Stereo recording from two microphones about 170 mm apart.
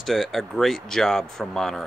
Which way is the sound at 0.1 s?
Centre (ahead or behind).